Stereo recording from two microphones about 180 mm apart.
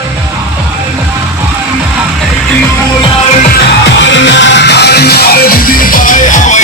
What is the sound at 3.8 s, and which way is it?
Music, 85° left.